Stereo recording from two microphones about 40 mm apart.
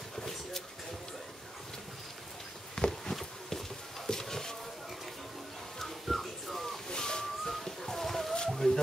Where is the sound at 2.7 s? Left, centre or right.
Centre.